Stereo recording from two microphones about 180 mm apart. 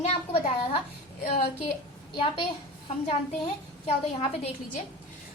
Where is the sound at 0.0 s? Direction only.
35° left (ahead or behind).